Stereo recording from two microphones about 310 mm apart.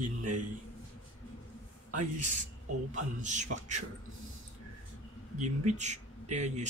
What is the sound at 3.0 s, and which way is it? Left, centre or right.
Speech, right.